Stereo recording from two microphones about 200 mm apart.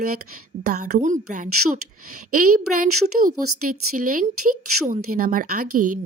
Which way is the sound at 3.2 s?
90° right.